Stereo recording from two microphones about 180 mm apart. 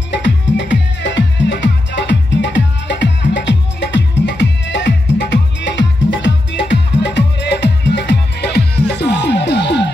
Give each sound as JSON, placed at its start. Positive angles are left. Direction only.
{"t": 0.1, "sound": "music", "side_deg": 75}